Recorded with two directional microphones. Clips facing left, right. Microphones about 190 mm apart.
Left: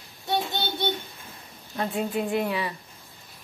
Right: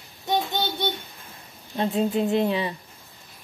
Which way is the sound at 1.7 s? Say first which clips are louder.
Right 4 dB; 25° right (ahead or behind).